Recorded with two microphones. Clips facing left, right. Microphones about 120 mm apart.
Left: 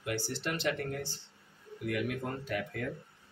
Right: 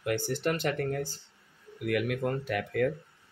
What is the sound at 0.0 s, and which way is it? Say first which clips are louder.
Speech: right 6 dB; 55° right (ahead or behind).